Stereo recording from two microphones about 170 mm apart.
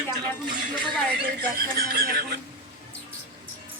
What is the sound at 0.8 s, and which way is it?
Speech, 65° right (ahead or behind).